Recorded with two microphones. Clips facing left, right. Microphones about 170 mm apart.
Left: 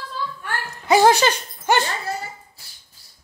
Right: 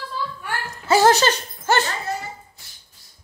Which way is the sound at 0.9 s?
15° left (ahead or behind).